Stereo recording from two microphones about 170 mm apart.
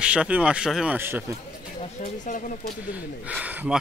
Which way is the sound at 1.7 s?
40° left (ahead or behind).